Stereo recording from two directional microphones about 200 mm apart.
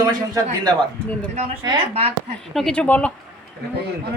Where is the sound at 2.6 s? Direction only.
5° left (ahead or behind).